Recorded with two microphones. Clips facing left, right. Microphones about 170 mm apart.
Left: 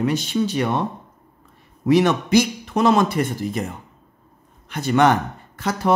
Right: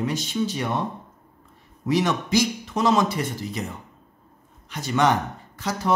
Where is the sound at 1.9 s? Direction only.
60° left (ahead or behind).